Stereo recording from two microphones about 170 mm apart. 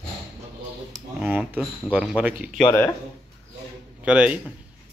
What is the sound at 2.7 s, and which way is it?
Speech, 15° left (ahead or behind).